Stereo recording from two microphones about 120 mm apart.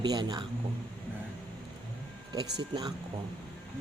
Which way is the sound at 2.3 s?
35° right (ahead or behind).